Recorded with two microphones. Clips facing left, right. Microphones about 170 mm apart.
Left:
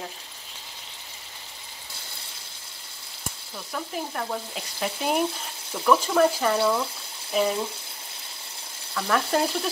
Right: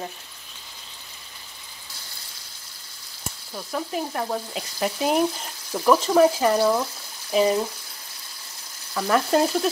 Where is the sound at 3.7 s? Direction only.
20° right (ahead or behind).